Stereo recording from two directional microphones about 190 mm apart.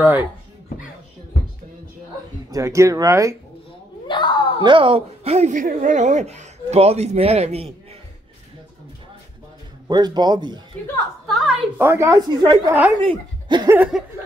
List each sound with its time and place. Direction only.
0.0 s a woman's voice: 10° right (ahead or behind)
2.5 s a woman's voice: 15° right (ahead or behind)
4.1 s a sound: 25° left (ahead or behind)
4.6 s speech: 25° right (ahead or behind)
9.8 s speech: 20° right (ahead or behind)
11.2 s a sound: centre (ahead or behind)
11.8 s a woman's voice: 15° right (ahead or behind)
13.0 s speech: 25° right (ahead or behind)